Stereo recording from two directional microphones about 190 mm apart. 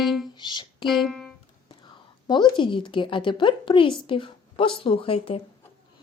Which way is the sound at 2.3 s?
25° left (ahead or behind).